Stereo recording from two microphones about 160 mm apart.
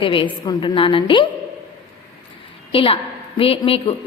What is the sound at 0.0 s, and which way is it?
A woman's voice, 30° left (ahead or behind).